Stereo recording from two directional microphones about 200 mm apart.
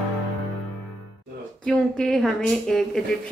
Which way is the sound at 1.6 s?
5° left (ahead or behind).